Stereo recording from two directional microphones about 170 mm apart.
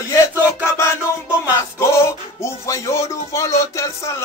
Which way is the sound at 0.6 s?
15° left (ahead or behind).